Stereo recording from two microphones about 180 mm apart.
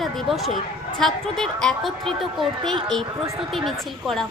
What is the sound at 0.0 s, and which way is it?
A woman's voice, centre (ahead or behind).